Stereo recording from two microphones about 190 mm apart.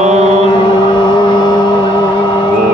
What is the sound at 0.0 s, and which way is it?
Mantra, 35° right (ahead or behind).